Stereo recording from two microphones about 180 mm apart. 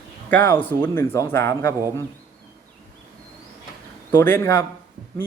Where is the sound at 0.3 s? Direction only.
10° left (ahead or behind).